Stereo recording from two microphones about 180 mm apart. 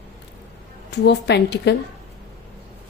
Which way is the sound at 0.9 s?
70° left (ahead or behind).